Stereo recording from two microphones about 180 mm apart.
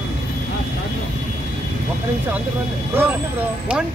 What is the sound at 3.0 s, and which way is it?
Speech, 10° right (ahead or behind).